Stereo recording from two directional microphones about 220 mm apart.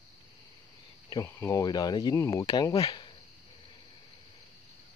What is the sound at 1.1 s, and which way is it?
Speech, 15° left (ahead or behind).